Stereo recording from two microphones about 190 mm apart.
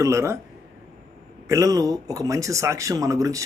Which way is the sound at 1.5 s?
15° right (ahead or behind).